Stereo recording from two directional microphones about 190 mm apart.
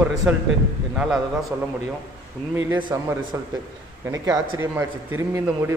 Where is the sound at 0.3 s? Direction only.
5° right (ahead or behind).